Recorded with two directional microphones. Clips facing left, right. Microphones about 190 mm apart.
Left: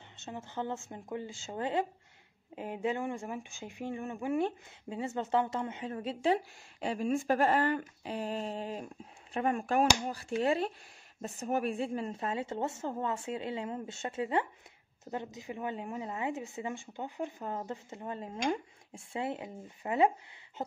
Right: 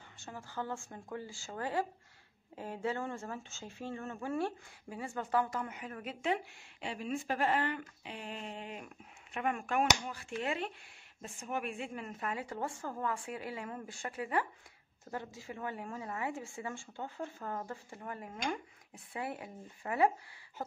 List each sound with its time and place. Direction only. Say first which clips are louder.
0.2 s speech: left 4 dB; 20° left (ahead or behind)